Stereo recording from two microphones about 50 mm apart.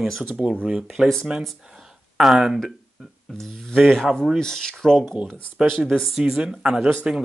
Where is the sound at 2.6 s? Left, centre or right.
Centre.